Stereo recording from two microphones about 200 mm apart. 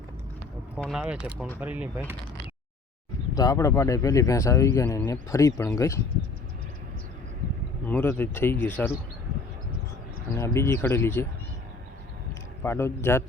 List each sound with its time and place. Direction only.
0.8 s speech: centre (ahead or behind)
3.3 s speech: 20° left (ahead or behind)
7.9 s speech: 10° left (ahead or behind)
10.3 s speech: 15° left (ahead or behind)
12.6 s speech: 10° left (ahead or behind)